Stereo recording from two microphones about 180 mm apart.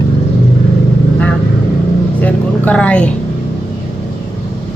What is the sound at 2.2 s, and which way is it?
Speech, 10° left (ahead or behind).